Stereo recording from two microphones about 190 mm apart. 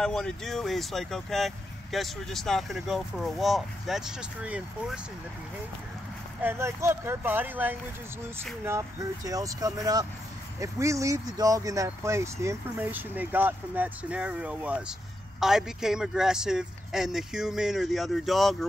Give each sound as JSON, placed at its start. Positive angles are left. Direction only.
{"t": 0.0, "sound": "speech", "side_deg": 5}
{"t": 6.4, "sound": "speech", "side_deg": -15}